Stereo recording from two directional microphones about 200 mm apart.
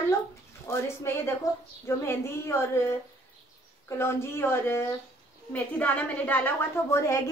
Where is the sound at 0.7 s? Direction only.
15° left (ahead or behind).